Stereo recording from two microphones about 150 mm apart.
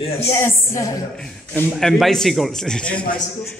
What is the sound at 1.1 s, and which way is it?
Speech, 5° left (ahead or behind).